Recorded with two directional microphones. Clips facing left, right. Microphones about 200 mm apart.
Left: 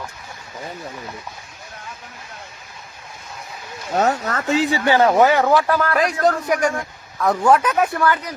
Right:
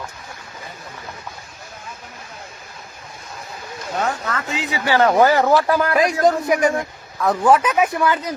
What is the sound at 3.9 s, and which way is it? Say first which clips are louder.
Speech: left 4 dB; 40° left (ahead or behind).